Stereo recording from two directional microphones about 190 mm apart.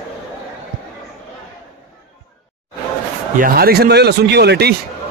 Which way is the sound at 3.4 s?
55° right (ahead or behind).